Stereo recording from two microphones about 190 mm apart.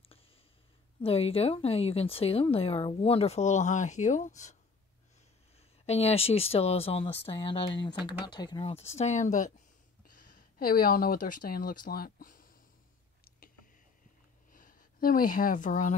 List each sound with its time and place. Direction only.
1.0 s a woman's voice: 30° left (ahead or behind)
5.9 s a woman's voice: 35° left (ahead or behind)
14.5 s speech: 45° left (ahead or behind)